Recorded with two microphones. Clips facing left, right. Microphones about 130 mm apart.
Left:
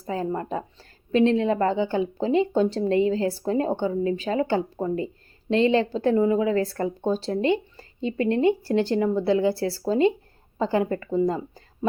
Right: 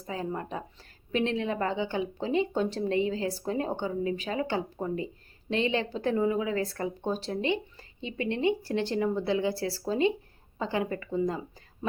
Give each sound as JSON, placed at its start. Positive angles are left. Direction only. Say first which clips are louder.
{"t": 0.1, "sound": "speech", "louder": "left 6 dB", "side_deg": 40}